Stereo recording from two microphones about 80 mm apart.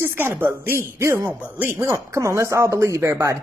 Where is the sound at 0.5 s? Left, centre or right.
Right.